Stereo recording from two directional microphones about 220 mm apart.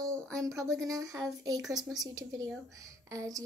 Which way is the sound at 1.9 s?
15° right (ahead or behind).